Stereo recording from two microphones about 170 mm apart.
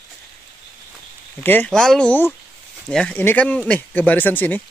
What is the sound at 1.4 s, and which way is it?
Speech, 10° left (ahead or behind).